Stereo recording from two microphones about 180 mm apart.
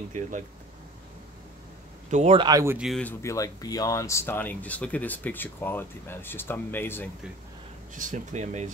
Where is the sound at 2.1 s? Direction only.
40° right (ahead or behind).